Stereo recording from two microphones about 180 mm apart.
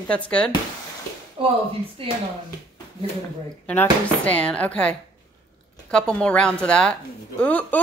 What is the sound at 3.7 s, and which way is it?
A woman's voice, 5° left (ahead or behind).